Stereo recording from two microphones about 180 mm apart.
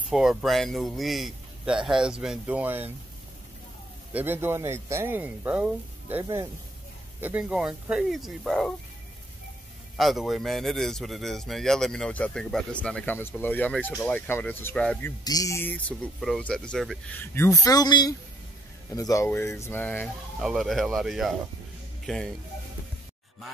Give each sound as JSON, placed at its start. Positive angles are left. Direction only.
{"t": 0.1, "sound": "speech", "side_deg": 0}
{"t": 4.1, "sound": "speech", "side_deg": -10}
{"t": 9.9, "sound": "speech", "side_deg": 0}
{"t": 15.2, "sound": "speech", "side_deg": 20}
{"t": 16.2, "sound": "speech", "side_deg": 5}
{"t": 17.2, "sound": "speech", "side_deg": 15}
{"t": 20.3, "sound": "speech", "side_deg": 0}